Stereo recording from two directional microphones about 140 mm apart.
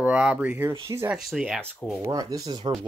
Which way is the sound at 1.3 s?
Centre (ahead or behind).